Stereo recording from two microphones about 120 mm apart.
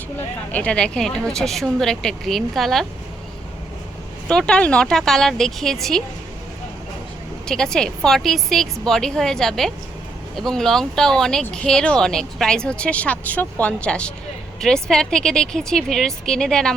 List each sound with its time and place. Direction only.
0.5 s a woman's voice: 10° left (ahead or behind)
4.3 s a woman's voice: 5° left (ahead or behind)
7.4 s a woman's voice: 5° left (ahead or behind)